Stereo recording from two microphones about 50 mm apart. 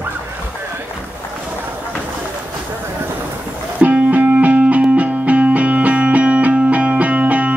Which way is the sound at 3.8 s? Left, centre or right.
Right.